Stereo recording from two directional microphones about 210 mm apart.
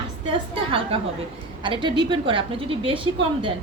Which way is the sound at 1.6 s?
25° right (ahead or behind).